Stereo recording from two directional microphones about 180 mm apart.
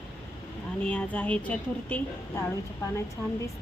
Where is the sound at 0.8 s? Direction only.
5° left (ahead or behind).